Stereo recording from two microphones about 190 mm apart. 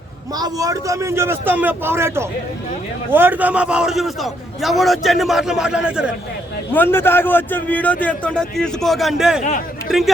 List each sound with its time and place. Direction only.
0.3 s a man's voice: 20° right (ahead or behind)
6.7 s a man's voice: 10° left (ahead or behind)
9.4 s speech: 45° left (ahead or behind)